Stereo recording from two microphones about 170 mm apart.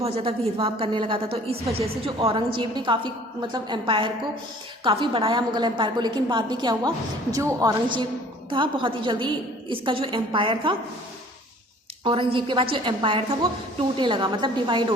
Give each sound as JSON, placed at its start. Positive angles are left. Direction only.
{"t": 0.0, "sound": "a woman's voice", "side_deg": -35}
{"t": 12.0, "sound": "a woman's voice", "side_deg": -30}